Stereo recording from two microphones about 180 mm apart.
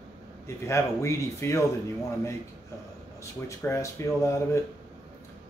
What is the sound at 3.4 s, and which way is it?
Speech, 15° left (ahead or behind).